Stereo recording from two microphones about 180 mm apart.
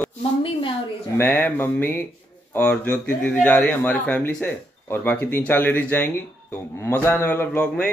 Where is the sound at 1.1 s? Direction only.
10° left (ahead or behind).